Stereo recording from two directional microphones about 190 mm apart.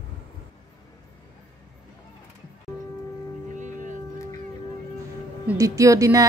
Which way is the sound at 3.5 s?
40° right (ahead or behind).